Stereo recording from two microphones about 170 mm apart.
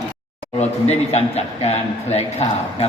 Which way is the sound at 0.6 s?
40° left (ahead or behind).